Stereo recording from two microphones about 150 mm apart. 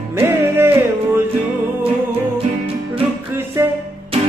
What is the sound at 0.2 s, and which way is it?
Music, 15° right (ahead or behind).